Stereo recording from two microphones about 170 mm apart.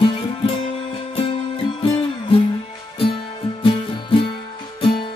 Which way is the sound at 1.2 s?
30° left (ahead or behind).